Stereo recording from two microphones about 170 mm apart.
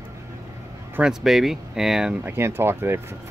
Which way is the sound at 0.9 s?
5° right (ahead or behind).